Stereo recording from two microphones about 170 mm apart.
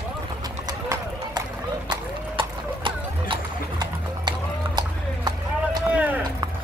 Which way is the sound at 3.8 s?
25° right (ahead or behind).